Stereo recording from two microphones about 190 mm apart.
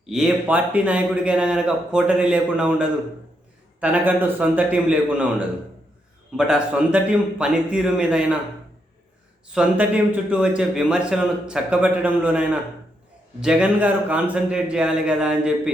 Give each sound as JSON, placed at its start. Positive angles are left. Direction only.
{"t": 0.0, "sound": "a man's voice", "side_deg": -5}
{"t": 6.3, "sound": "speech", "side_deg": -5}
{"t": 9.5, "sound": "speech", "side_deg": -5}